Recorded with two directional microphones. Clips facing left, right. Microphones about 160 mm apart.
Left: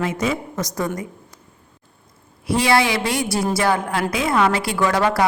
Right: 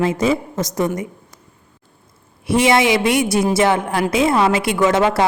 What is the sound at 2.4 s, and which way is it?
A woman's voice, 20° right (ahead or behind).